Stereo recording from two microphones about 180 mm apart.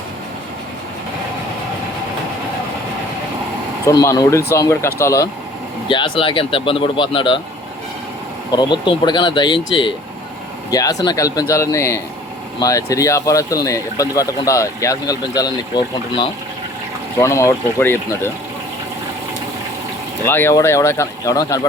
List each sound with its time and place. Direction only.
4.0 s speech: 15° left (ahead or behind)
5.9 s speech: 30° left (ahead or behind)
8.5 s speech: 25° left (ahead or behind)
10.7 s speech: 20° left (ahead or behind)
20.2 s speech: 15° left (ahead or behind)